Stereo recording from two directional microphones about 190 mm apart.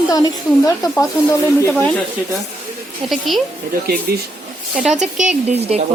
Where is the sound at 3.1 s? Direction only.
Centre (ahead or behind).